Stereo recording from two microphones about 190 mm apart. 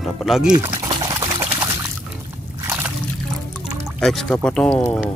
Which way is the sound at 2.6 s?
10° right (ahead or behind).